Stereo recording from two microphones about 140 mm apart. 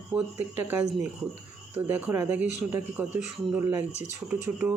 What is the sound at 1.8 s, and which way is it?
Speech, 15° right (ahead or behind).